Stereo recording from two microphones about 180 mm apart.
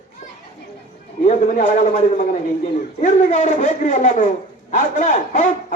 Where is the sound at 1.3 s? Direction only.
45° left (ahead or behind).